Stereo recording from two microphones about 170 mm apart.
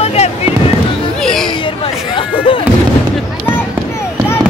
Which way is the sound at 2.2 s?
30° left (ahead or behind).